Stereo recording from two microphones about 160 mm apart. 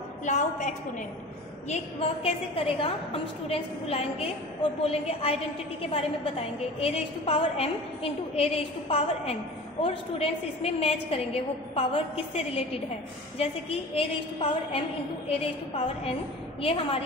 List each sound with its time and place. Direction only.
0.2 s a woman's voice: 50° left (ahead or behind)
1.7 s a woman's voice: 40° left (ahead or behind)
13.4 s a woman's voice: 40° left (ahead or behind)